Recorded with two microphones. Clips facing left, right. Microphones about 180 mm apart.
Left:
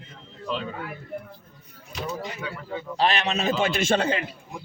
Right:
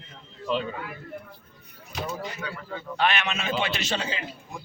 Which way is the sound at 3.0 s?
35° left (ahead or behind).